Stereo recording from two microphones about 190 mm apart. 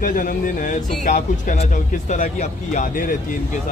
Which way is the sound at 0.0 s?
45° left (ahead or behind).